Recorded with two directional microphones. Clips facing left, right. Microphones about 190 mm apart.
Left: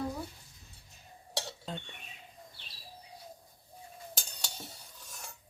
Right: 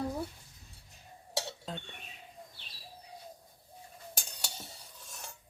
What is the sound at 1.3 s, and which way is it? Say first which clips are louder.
Dishes: right 1 dB; 5° right (ahead or behind).